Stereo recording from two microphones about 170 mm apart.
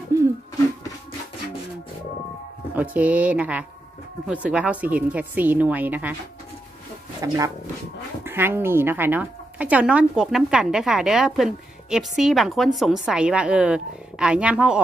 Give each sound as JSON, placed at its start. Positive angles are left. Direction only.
{"t": 0.1, "sound": "a sound", "side_deg": -15}
{"t": 2.7, "sound": "speech", "side_deg": -10}
{"t": 7.2, "sound": "a woman's voice", "side_deg": -20}